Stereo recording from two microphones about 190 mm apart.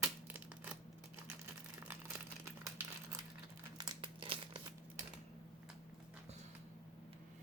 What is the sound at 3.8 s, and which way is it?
Crumpling, 25° right (ahead or behind).